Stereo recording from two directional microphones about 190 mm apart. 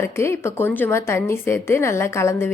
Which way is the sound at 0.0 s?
15° left (ahead or behind).